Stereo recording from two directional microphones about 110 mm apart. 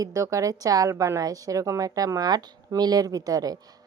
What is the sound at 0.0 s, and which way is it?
A woman's voice, 30° right (ahead or behind).